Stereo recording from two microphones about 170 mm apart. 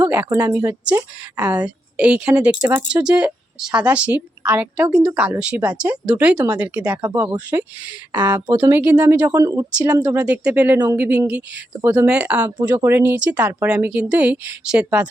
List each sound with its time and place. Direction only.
0.0 s a woman's voice: 10° right (ahead or behind)
7.1 s a woman's voice: 20° right (ahead or behind)